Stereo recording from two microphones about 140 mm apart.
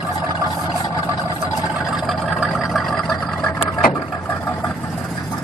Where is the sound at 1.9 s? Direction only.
Centre (ahead or behind).